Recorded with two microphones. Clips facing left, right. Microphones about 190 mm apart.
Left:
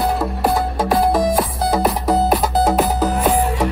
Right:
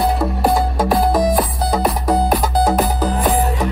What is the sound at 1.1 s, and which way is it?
Music, 5° left (ahead or behind).